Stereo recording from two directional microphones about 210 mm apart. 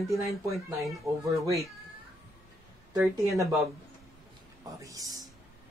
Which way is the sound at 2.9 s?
15° right (ahead or behind).